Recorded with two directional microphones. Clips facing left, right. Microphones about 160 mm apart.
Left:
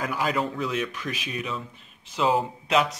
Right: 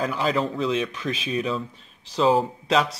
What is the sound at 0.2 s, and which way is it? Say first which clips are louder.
Speech: right 2 dB; 25° right (ahead or behind).